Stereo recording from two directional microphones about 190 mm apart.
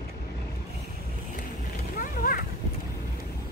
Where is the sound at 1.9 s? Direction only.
45° left (ahead or behind).